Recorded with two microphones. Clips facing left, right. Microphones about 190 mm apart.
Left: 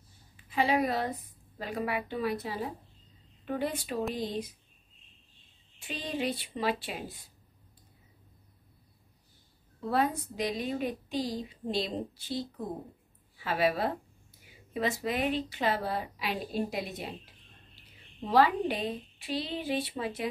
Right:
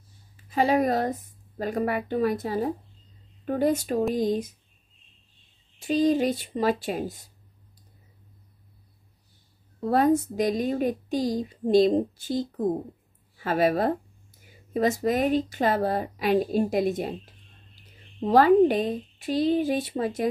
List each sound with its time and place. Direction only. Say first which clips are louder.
0.4 s a woman's voice: right 5 dB; 45° right (ahead or behind)
5.8 s a woman's voice: right 13 dB; 40° right (ahead or behind)
9.8 s a woman's voice: right 8 dB; 45° right (ahead or behind)
18.2 s a woman's voice: right 8 dB; 45° right (ahead or behind)